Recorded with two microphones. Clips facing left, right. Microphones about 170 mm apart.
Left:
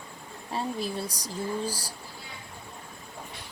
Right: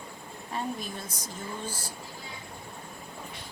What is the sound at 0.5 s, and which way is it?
Speech, 35° left (ahead or behind).